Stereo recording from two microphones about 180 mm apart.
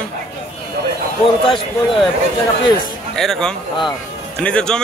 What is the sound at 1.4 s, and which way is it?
Speech, 30° left (ahead or behind).